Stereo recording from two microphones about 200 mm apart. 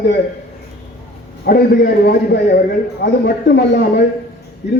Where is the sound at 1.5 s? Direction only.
50° left (ahead or behind).